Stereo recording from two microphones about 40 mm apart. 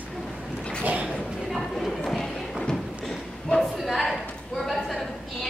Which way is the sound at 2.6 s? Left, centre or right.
Centre.